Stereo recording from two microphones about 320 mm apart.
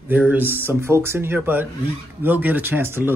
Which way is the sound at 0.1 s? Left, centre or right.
Centre.